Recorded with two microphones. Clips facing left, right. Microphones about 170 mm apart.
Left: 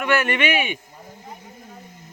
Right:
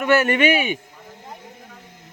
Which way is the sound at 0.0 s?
40° right (ahead or behind).